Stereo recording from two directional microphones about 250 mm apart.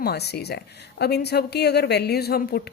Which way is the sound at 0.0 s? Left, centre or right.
Left.